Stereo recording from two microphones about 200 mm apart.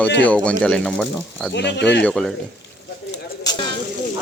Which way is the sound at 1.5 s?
60° left (ahead or behind).